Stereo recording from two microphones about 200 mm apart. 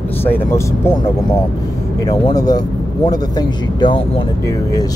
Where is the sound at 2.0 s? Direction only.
20° left (ahead or behind).